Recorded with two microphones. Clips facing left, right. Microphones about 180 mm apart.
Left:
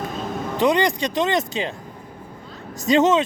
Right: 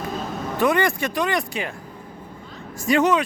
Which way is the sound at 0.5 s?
20° left (ahead or behind).